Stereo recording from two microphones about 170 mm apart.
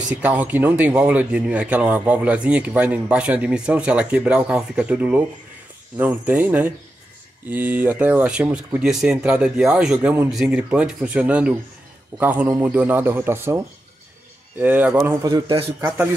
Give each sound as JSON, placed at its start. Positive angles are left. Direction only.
{"t": 0.2, "sound": "a man's voice", "side_deg": -10}
{"t": 14.6, "sound": "a man's voice", "side_deg": -10}
{"t": 15.4, "sound": "a man's voice", "side_deg": -30}